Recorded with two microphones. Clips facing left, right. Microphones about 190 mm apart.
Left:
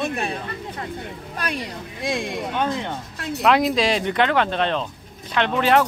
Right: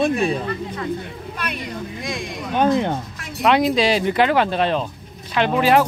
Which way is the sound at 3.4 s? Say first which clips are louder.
Right 2 dB; centre (ahead or behind).